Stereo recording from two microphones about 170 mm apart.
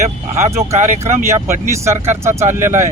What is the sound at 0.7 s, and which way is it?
Speech, 40° right (ahead or behind).